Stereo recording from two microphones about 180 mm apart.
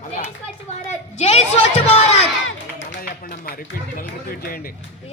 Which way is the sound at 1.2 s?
40° left (ahead or behind).